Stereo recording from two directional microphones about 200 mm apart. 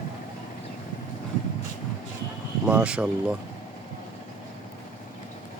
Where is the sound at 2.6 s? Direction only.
5° right (ahead or behind).